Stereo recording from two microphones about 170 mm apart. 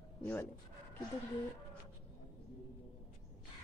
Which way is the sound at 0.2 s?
10° left (ahead or behind).